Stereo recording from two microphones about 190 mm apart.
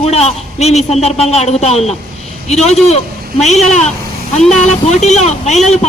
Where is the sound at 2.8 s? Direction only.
35° left (ahead or behind).